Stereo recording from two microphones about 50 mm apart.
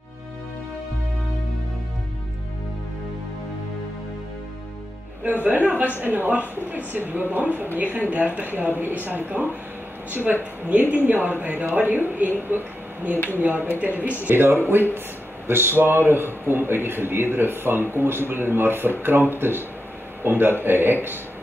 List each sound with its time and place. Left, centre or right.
5.4 s speech: right
14.2 s a man's voice: right